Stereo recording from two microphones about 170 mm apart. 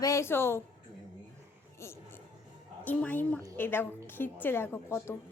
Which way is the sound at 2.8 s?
10° left (ahead or behind).